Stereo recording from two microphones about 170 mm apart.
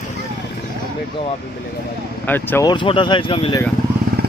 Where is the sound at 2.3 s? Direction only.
10° left (ahead or behind).